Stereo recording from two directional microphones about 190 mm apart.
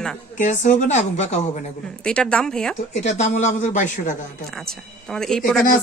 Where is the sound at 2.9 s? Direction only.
35° left (ahead or behind).